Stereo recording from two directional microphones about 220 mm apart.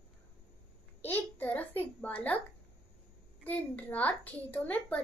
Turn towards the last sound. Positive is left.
turn(degrees=5)  # may be behind; listen again after turning